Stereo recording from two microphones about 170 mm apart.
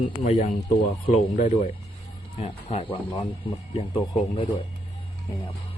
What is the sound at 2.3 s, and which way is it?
Speech, 40° left (ahead or behind).